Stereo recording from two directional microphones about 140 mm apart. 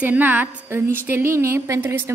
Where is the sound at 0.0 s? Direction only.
10° right (ahead or behind).